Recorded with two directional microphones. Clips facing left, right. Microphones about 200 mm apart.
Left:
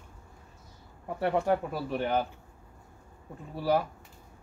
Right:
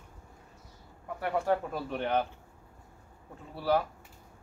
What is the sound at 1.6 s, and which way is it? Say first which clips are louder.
Speech: left 2 dB; 5° left (ahead or behind).